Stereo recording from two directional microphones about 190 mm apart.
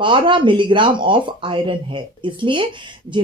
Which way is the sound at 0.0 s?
25° right (ahead or behind).